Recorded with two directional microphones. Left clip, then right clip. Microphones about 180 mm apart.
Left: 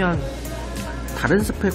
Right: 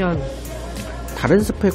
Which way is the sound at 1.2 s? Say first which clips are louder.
Right 3 dB; 20° right (ahead or behind).